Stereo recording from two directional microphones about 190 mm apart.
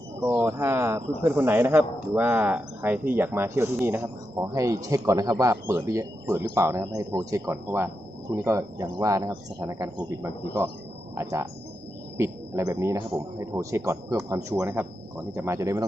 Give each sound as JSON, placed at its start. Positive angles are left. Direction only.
{"t": 0.4, "sound": "speech", "side_deg": -15}